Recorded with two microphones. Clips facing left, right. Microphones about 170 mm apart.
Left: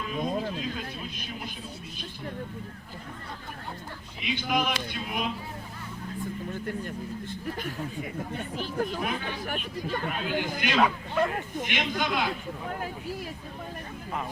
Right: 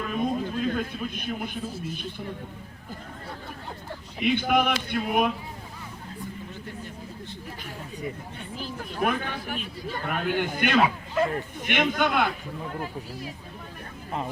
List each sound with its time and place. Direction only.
0.0 s a sound: 55° right (ahead or behind)
4.2 s speech: 55° right (ahead or behind)
9.0 s speech: 55° right (ahead or behind)
10.8 s speech: 5° right (ahead or behind)
11.7 s speech: 55° right (ahead or behind)